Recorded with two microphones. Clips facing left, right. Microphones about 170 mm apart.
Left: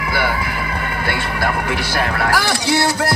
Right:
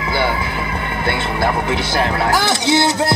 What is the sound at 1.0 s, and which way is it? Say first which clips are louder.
Speech: right 3 dB; 25° right (ahead or behind).